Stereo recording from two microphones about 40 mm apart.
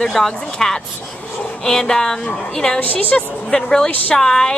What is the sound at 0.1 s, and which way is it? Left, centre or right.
Speech, centre.